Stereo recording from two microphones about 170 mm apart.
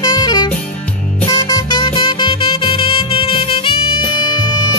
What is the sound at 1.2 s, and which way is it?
Music, 25° left (ahead or behind).